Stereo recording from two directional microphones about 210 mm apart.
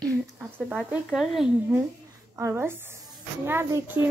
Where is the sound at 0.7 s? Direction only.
Centre (ahead or behind).